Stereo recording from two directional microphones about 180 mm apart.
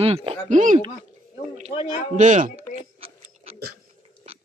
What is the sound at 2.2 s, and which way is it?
Speech, 40° right (ahead or behind).